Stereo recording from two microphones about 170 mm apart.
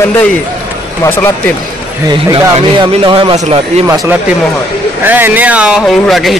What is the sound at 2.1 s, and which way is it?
A man's voice, 25° right (ahead or behind).